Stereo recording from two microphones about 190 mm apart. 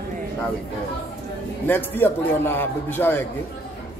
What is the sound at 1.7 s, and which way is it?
A man's voice, 10° left (ahead or behind).